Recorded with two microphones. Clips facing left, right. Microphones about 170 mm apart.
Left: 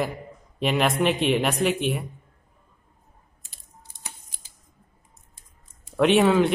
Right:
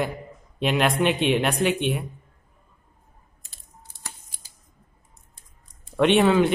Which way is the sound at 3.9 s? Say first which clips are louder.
Right 1 dB; 20° left (ahead or behind).